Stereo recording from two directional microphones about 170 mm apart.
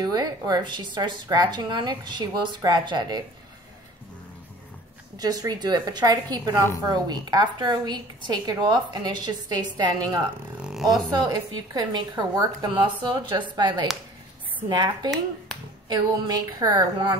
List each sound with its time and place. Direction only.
0.0 s a woman's voice: 25° right (ahead or behind)
5.1 s a woman's voice: 20° right (ahead or behind)
10.6 s a sound: centre (ahead or behind)
11.1 s a woman's voice: 25° right (ahead or behind)